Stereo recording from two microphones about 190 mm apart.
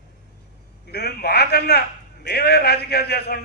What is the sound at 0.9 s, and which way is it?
A man's voice, 55° left (ahead or behind).